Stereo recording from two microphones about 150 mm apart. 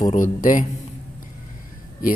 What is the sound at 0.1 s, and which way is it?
Speech, 60° left (ahead or behind).